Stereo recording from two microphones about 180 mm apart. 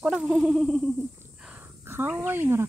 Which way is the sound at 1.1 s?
5° right (ahead or behind).